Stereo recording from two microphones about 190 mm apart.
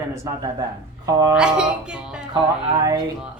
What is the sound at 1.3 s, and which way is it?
Speech, 5° right (ahead or behind).